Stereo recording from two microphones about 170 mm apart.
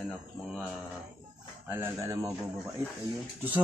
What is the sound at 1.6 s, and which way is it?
Speech, 15° right (ahead or behind).